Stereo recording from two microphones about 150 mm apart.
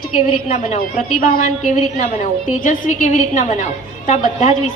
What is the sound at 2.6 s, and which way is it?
A woman's voice, 65° left (ahead or behind).